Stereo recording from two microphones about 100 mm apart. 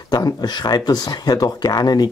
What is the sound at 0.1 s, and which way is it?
Speech, 45° left (ahead or behind).